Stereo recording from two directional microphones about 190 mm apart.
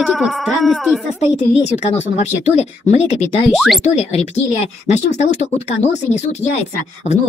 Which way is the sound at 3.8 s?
35° left (ahead or behind).